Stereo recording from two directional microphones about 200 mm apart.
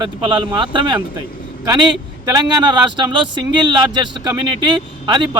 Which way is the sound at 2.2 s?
20° right (ahead or behind).